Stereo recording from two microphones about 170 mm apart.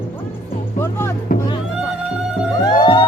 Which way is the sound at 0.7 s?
15° left (ahead or behind).